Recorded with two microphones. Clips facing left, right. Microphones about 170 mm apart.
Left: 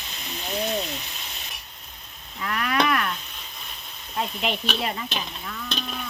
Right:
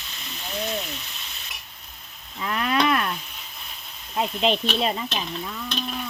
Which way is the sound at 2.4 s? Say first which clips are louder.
Right 1 dB; 25° right (ahead or behind).